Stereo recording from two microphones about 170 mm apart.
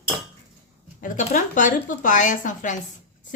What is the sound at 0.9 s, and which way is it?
Speech, 50° left (ahead or behind).